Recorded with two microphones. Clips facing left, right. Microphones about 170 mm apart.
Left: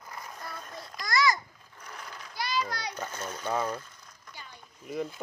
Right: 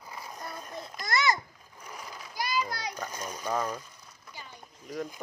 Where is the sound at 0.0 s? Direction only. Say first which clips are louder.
Right 1 dB; 10° right (ahead or behind).